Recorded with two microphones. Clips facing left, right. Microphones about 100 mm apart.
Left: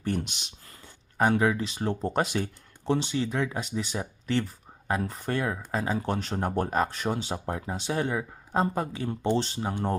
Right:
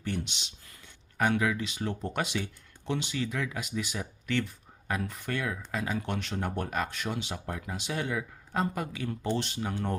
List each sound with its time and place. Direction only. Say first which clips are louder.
0.0 s speech: left 4 dB; 45° left (ahead or behind)